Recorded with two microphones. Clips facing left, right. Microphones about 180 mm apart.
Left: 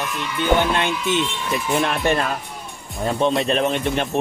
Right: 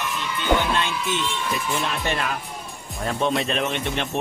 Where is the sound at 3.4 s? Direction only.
35° left (ahead or behind).